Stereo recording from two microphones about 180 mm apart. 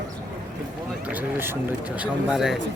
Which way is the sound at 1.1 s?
10° right (ahead or behind).